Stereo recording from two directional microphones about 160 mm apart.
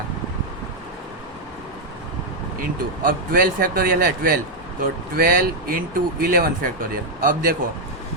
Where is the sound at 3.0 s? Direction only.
65° right (ahead or behind).